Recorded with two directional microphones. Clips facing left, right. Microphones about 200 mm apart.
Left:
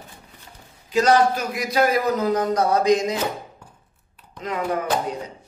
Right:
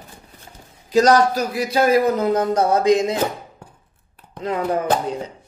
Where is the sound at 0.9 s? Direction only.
40° right (ahead or behind).